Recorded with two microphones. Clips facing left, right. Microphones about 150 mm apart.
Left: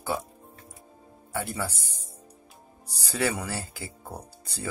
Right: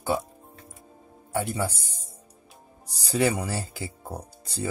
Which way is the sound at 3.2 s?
20° right (ahead or behind).